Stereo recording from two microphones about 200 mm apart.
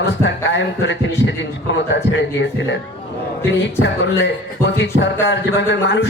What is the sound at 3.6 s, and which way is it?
A man's voice, 65° left (ahead or behind).